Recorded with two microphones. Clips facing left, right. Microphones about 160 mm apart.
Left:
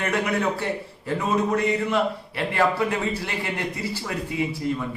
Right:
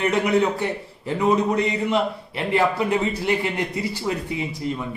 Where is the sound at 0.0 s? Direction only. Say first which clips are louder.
Right 4 dB; 20° right (ahead or behind).